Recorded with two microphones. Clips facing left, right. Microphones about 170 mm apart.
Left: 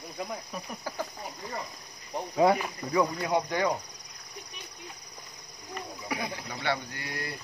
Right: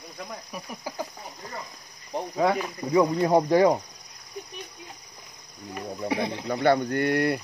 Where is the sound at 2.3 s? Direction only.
10° left (ahead or behind).